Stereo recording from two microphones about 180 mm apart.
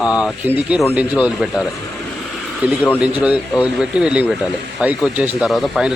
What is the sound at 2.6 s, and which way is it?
Speech, 10° right (ahead or behind).